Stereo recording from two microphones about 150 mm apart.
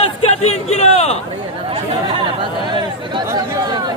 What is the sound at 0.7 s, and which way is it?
Speech, 45° left (ahead or behind).